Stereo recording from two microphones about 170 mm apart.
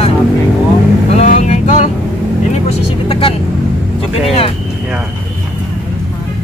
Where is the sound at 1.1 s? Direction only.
40° left (ahead or behind).